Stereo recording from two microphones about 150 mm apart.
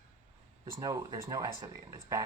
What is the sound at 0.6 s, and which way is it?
Speech, 25° right (ahead or behind).